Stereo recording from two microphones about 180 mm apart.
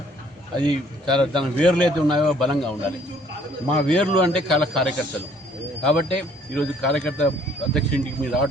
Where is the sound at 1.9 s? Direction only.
25° right (ahead or behind).